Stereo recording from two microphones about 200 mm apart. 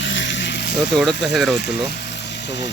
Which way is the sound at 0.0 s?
65° left (ahead or behind).